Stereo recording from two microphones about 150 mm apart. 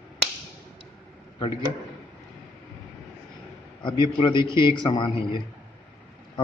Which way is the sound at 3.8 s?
30° left (ahead or behind).